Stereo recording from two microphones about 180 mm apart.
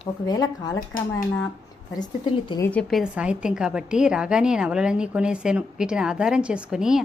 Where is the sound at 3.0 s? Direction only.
5° right (ahead or behind).